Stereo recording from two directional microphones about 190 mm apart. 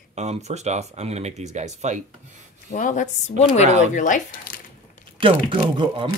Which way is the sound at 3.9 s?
40° left (ahead or behind).